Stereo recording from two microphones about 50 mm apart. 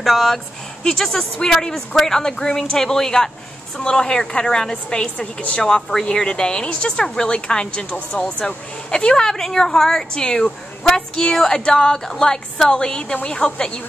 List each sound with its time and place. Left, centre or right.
0.0 s speech: centre; by 5.6 s left
5.6 s speech: centre